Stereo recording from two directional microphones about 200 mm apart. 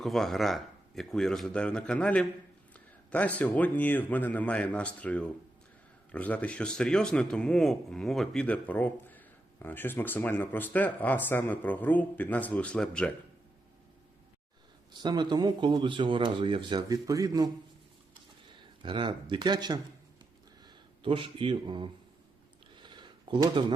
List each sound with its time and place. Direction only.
0.0 s a man's voice: centre (ahead or behind)
14.9 s speech: 20° right (ahead or behind)
18.8 s speech: 25° right (ahead or behind)
21.0 s speech: 25° right (ahead or behind)
22.8 s a sound: 20° right (ahead or behind)